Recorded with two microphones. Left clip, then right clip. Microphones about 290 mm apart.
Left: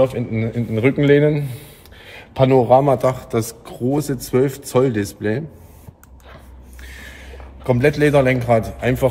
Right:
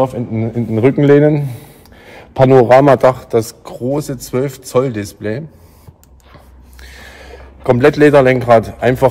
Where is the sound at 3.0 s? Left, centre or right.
Centre.